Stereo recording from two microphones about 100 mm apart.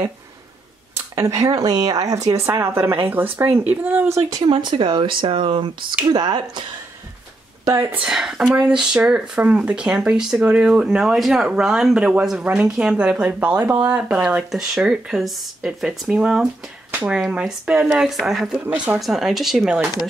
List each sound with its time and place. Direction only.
0.9 s speech: 30° right (ahead or behind)
4.4 s speech: 55° right (ahead or behind)
7.6 s speech: 30° right (ahead or behind)
8.1 s speech: 5° right (ahead or behind)
18.6 s speech: 20° right (ahead or behind)
18.9 s speech: centre (ahead or behind)